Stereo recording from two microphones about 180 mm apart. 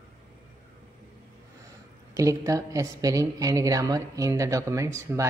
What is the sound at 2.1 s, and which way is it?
A woman's voice, 20° right (ahead or behind).